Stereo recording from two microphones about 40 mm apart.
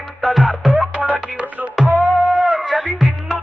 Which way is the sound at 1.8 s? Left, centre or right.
Centre.